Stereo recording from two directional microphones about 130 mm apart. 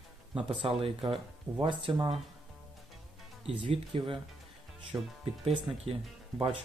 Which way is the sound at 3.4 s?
45° right (ahead or behind).